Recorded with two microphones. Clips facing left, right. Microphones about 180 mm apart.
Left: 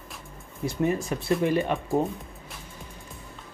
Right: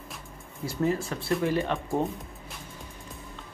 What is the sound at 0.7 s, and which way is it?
Speech, 20° left (ahead or behind).